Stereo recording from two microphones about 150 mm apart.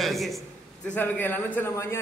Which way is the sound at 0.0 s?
Centre (ahead or behind).